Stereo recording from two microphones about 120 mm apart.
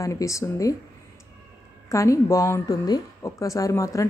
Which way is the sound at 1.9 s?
25° left (ahead or behind).